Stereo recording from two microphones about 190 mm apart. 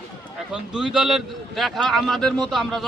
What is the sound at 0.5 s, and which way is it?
A man's voice, 5° right (ahead or behind).